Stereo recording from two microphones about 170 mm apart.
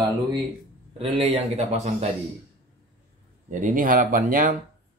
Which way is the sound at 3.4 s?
50° right (ahead or behind).